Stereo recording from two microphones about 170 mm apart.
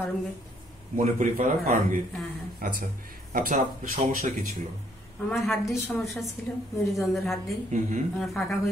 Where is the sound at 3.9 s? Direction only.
50° right (ahead or behind).